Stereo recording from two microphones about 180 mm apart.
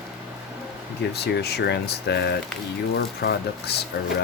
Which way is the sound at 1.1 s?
65° left (ahead or behind).